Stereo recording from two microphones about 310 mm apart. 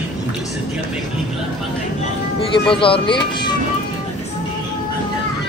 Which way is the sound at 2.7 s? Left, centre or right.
Centre.